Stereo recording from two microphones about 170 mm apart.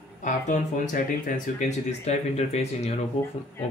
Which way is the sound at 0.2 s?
45° left (ahead or behind).